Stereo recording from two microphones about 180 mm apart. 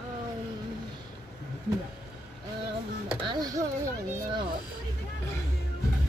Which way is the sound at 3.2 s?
25° right (ahead or behind).